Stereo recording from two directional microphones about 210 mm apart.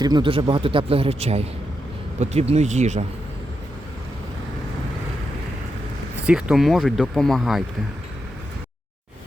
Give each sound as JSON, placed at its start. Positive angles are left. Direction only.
{"t": 0.0, "sound": "speech", "side_deg": -20}
{"t": 6.2, "sound": "speech", "side_deg": -5}